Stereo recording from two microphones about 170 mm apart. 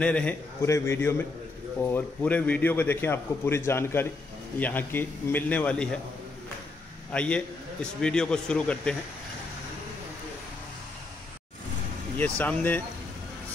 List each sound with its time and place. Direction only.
0.0 s a man's voice: 5° left (ahead or behind)
7.1 s a man's voice: 5° left (ahead or behind)
12.2 s a man's voice: 10° left (ahead or behind)